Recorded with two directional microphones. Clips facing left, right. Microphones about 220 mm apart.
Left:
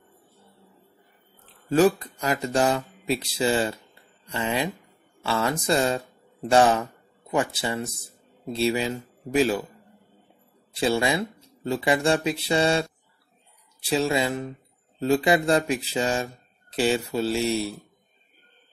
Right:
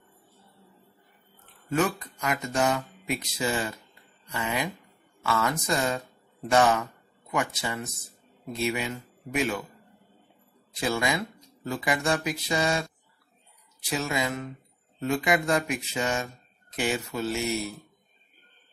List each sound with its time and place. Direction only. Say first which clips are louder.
1.4 s speech: left 7 dB; 35° left (ahead or behind)
10.7 s speech: left 4 dB; 30° left (ahead or behind)
13.8 s speech: left 6 dB; 30° left (ahead or behind)